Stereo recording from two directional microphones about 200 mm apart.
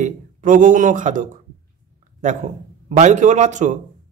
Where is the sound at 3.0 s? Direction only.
35° right (ahead or behind).